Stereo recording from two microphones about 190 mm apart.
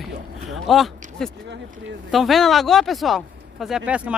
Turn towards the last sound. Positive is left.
turn(degrees=-5)  # may be behind; listen again after turning